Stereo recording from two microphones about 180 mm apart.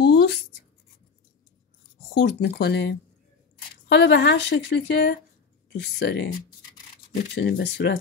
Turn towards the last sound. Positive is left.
turn(degrees=65)  # may be behind; listen again after turning